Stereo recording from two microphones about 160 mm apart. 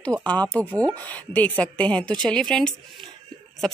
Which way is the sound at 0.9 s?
10° left (ahead or behind).